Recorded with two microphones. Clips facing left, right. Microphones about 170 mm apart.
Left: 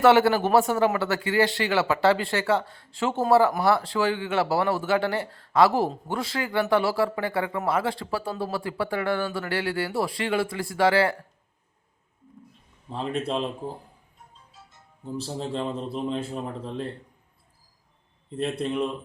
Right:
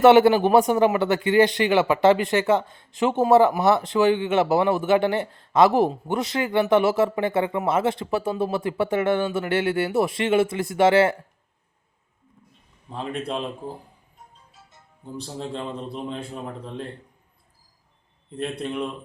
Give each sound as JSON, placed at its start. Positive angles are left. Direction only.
{"t": 0.0, "sound": "speech", "side_deg": -20}
{"t": 12.9, "sound": "a man's voice", "side_deg": 0}
{"t": 15.0, "sound": "a man's voice", "side_deg": 0}
{"t": 18.6, "sound": "a man's voice", "side_deg": 0}